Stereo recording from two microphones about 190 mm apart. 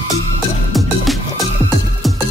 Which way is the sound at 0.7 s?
Centre (ahead or behind).